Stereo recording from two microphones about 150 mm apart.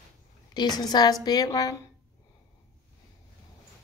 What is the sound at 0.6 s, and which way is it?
A woman's voice, 25° left (ahead or behind).